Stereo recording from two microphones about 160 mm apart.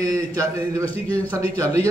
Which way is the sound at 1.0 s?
10° left (ahead or behind).